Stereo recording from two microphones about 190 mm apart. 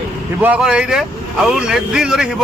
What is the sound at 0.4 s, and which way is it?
A man's voice, 5° right (ahead or behind).